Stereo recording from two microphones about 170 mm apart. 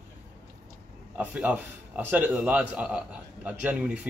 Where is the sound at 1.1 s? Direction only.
5° right (ahead or behind).